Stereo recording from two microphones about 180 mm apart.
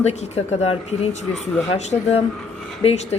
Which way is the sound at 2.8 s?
35° left (ahead or behind).